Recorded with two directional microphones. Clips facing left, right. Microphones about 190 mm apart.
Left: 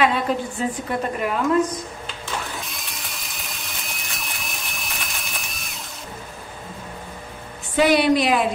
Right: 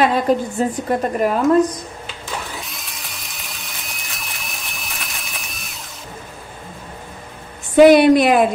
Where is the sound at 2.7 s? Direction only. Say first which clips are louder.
Even; centre (ahead or behind).